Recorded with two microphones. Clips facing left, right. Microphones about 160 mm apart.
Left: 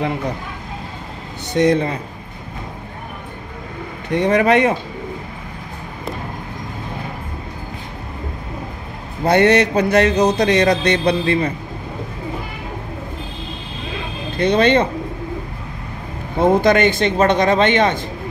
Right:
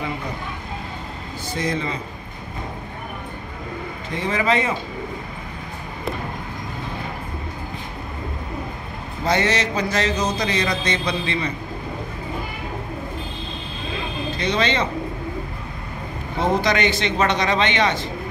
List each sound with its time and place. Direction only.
1.5 s speech: 70° left (ahead or behind)
4.1 s a man's voice: 65° left (ahead or behind)
9.2 s a man's voice: 60° left (ahead or behind)
14.3 s speech: 55° left (ahead or behind)
16.3 s a man's voice: 50° left (ahead or behind)